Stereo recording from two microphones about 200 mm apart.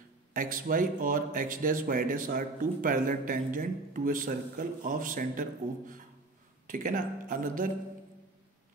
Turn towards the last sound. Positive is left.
turn(degrees=-40)  # may be behind; listen again after turning